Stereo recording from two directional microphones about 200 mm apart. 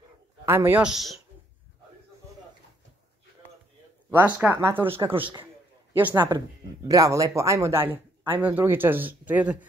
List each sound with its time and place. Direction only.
0.5 s a man's voice: 10° right (ahead or behind)
4.1 s speech: 10° right (ahead or behind)
5.2 s a man's voice: 25° right (ahead or behind); by 9.7 s 5° right (ahead or behind)